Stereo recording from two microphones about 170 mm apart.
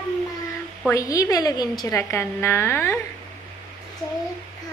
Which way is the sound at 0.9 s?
20° left (ahead or behind).